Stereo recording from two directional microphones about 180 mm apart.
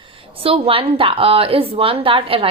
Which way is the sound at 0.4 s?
30° right (ahead or behind).